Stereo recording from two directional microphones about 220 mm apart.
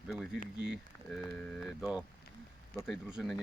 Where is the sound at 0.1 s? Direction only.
10° left (ahead or behind).